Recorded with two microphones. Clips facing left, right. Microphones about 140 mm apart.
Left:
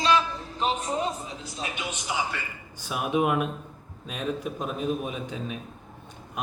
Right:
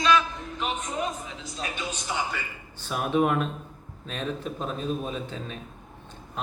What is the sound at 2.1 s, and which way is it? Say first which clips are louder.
A man's voice: left 1 dB; 5° left (ahead or behind).